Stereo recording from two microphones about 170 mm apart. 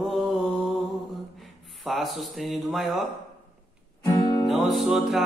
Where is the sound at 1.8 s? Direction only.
Centre (ahead or behind).